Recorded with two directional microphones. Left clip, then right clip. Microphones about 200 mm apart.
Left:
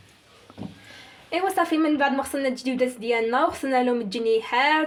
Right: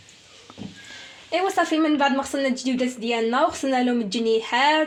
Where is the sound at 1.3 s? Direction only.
30° right (ahead or behind).